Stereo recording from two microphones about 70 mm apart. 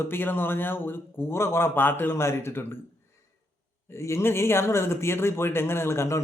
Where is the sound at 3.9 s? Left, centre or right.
Left.